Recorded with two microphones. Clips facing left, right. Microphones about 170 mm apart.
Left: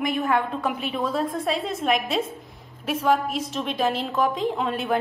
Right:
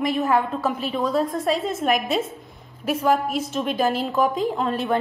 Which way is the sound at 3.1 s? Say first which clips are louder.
Right 2 dB; 50° right (ahead or behind).